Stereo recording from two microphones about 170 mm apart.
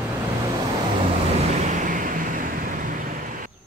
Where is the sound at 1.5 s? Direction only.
50° right (ahead or behind).